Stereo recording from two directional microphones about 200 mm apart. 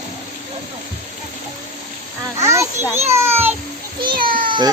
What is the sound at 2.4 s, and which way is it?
Children playing, 15° right (ahead or behind).